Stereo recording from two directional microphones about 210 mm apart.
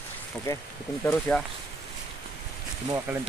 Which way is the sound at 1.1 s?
5° left (ahead or behind).